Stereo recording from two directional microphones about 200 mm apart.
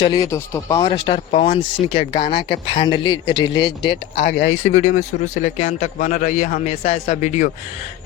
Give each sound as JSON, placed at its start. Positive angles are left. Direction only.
{"t": 0.0, "sound": "speech", "side_deg": 20}
{"t": 4.2, "sound": "speech", "side_deg": 55}
{"t": 4.7, "sound": "a man's voice", "side_deg": 35}
{"t": 6.8, "sound": "a man's voice", "side_deg": 30}